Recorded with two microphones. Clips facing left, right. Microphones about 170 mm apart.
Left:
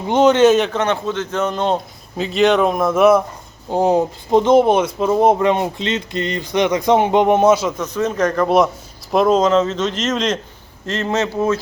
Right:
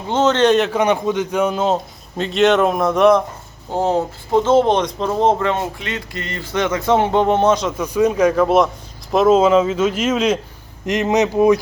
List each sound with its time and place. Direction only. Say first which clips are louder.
0.1 s speech: left 3 dB; 15° left (ahead or behind)
0.7 s a man's voice: right 3 dB; 15° right (ahead or behind); by 7.7 s 10° left (ahead or behind)
7.8 s speech: right 3 dB; 10° right (ahead or behind)